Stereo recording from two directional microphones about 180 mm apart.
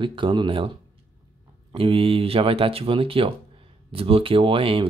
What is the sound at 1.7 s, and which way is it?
Speech, 30° right (ahead or behind).